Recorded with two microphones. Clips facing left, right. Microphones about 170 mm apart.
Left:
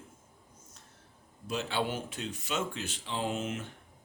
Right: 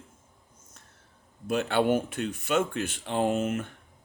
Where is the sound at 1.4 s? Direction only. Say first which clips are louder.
Right 8 dB; 55° right (ahead or behind).